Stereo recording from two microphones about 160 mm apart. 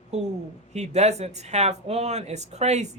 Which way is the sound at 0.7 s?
45° right (ahead or behind).